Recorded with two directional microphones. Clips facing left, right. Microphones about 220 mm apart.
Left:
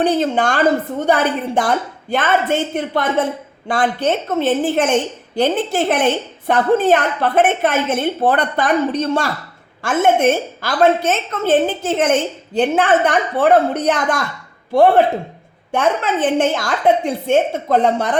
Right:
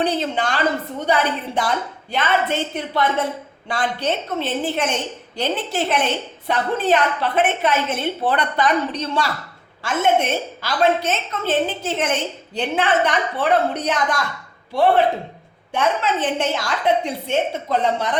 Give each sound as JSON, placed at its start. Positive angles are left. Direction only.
{"t": 0.0, "sound": "a woman's voice", "side_deg": 50}